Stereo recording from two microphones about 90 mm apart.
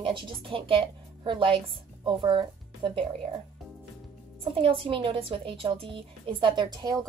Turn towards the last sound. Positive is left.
turn(degrees=-45)  # may be behind; listen again after turning